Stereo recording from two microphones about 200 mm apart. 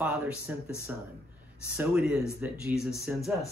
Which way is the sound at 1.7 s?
5° right (ahead or behind).